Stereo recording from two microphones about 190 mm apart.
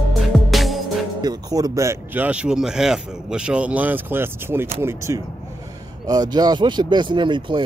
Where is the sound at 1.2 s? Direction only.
20° right (ahead or behind).